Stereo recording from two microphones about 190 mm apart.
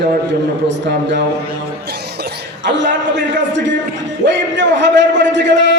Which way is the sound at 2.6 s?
70° right (ahead or behind).